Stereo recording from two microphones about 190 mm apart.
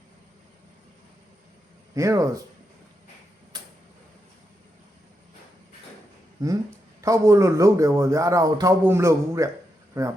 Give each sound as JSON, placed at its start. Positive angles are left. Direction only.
{"t": 2.0, "sound": "speech", "side_deg": -15}
{"t": 3.5, "sound": "a sound", "side_deg": -20}
{"t": 7.0, "sound": "speech", "side_deg": -15}